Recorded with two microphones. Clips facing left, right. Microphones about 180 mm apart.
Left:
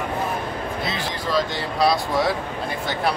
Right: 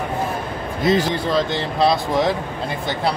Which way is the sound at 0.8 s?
45° right (ahead or behind).